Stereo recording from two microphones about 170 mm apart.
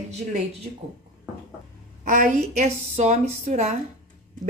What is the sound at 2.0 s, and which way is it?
Speech, 45° right (ahead or behind).